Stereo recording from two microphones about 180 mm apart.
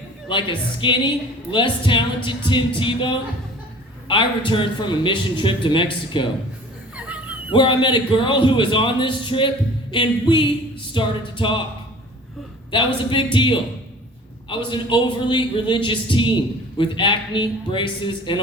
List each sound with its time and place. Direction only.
0.3 s a woman's voice: 25° left (ahead or behind)
6.9 s dog: 10° right (ahead or behind)
7.5 s a woman's voice: 25° left (ahead or behind)
12.7 s a woman's voice: 25° left (ahead or behind)